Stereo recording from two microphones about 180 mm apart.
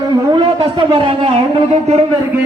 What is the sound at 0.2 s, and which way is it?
Speech, 25° right (ahead or behind).